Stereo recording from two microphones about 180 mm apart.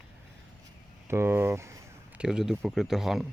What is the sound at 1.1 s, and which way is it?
Speech, 15° right (ahead or behind).